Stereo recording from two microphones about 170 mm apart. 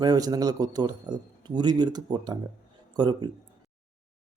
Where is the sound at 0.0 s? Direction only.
25° right (ahead or behind).